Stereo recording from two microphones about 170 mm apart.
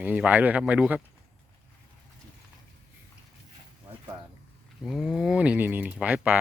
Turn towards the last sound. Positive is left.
turn(degrees=-10)  # may be behind; listen again after turning